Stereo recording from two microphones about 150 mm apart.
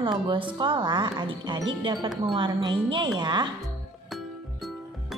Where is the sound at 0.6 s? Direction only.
30° right (ahead or behind).